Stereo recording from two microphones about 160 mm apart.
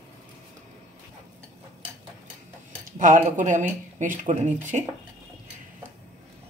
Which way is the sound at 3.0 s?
55° right (ahead or behind).